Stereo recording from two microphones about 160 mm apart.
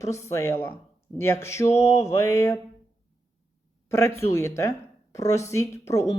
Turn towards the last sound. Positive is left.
turn(degrees=20)  # may be behind; listen again after turning